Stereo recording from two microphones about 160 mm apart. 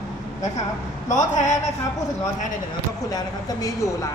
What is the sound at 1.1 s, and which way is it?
Speech, 50° left (ahead or behind).